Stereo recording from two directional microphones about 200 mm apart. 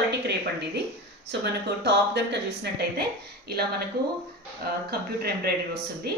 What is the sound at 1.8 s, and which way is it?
Speech, 60° right (ahead or behind).